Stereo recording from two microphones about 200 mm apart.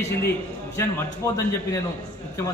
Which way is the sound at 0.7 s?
15° left (ahead or behind).